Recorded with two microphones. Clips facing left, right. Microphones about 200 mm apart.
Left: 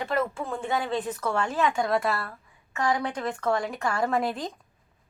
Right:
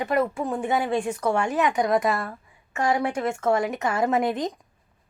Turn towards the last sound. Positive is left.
turn(degrees=-20)  # may be behind; listen again after turning